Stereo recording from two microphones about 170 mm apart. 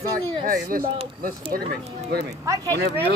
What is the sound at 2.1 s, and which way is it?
Speech, 75° right (ahead or behind).